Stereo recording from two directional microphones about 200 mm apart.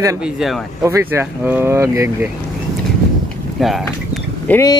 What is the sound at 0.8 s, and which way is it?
Speech, 15° right (ahead or behind).